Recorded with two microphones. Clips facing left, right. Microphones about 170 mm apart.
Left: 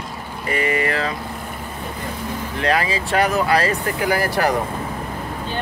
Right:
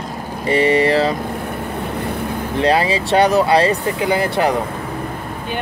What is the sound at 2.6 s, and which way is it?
Speech, 30° right (ahead or behind).